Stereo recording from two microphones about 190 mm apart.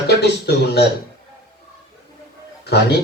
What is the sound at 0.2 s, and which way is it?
Speech, 60° left (ahead or behind).